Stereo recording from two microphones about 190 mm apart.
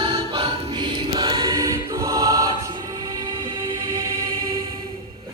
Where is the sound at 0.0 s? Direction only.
25° right (ahead or behind).